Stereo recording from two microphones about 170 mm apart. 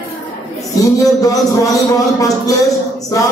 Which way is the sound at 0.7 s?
20° left (ahead or behind).